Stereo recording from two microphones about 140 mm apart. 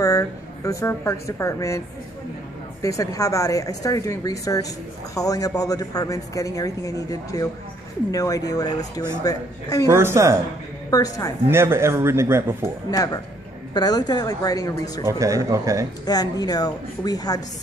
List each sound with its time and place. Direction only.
0.0 s a woman's voice: 20° left (ahead or behind)
2.8 s a man's voice: 25° left (ahead or behind)
9.8 s speech: 20° right (ahead or behind)
10.9 s a man's voice: 25° left (ahead or behind)
11.4 s a man's voice: 15° right (ahead or behind)
12.9 s a man's voice: 25° left (ahead or behind)
15.0 s speech: 20° right (ahead or behind)
16.1 s a man's voice: 30° left (ahead or behind)